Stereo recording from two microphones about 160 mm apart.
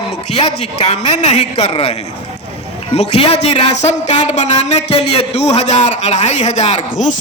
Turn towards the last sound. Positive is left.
turn(degrees=45)  # may be behind; listen again after turning